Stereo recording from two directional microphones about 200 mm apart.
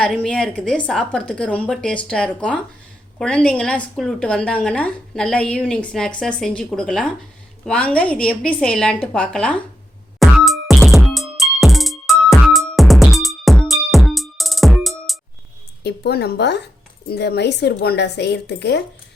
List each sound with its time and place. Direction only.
0.0 s a woman's voice: centre (ahead or behind)
10.2 s music: centre (ahead or behind)
15.8 s speech: 55° left (ahead or behind)